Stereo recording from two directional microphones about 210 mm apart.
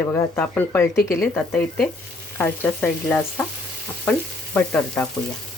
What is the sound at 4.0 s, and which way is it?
Frying, 10° left (ahead or behind).